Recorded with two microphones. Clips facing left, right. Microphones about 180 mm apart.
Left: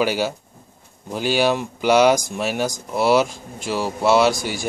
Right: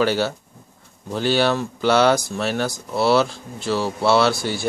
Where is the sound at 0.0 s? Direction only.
10° left (ahead or behind).